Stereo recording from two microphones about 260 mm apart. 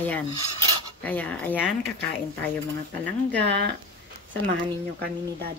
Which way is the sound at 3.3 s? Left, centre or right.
Right.